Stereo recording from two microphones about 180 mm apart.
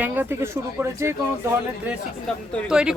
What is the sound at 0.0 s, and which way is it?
Speech, 10° right (ahead or behind).